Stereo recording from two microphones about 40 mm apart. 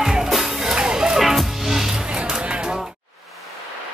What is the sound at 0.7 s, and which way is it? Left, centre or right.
Music, centre.